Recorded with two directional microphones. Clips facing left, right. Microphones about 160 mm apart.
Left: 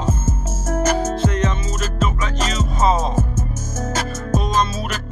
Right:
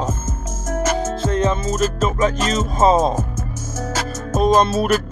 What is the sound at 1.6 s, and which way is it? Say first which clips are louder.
Music: right 4 dB; 40° right (ahead or behind).